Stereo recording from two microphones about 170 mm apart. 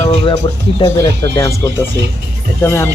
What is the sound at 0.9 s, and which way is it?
Speech, 15° left (ahead or behind).